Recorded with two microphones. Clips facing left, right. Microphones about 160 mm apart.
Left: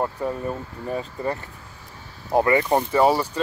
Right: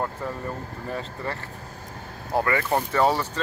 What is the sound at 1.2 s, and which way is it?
Speech, 15° left (ahead or behind).